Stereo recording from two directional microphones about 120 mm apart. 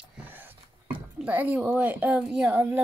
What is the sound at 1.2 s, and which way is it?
A woman's voice, 15° right (ahead or behind).